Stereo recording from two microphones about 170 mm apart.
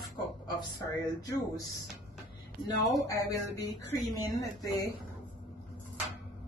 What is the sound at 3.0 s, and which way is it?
Speech, 20° left (ahead or behind).